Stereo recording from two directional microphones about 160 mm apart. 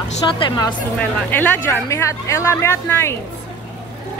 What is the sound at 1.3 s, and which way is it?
Speech, 10° left (ahead or behind).